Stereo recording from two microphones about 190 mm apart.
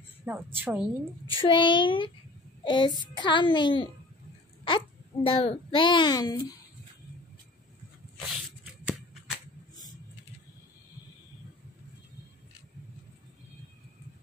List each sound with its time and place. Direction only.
0.2 s a woman's voice: 10° right (ahead or behind)
1.3 s a child's voice: 25° left (ahead or behind)